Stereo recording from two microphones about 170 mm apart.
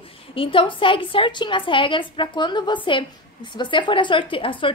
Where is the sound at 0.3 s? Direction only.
30° left (ahead or behind).